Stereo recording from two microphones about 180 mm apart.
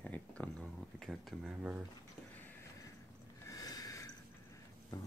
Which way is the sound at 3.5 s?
20° left (ahead or behind).